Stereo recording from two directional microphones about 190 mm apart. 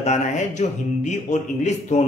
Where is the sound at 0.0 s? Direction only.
40° left (ahead or behind).